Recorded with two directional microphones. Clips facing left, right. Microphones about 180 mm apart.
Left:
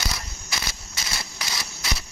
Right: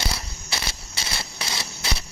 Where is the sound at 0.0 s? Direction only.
30° right (ahead or behind).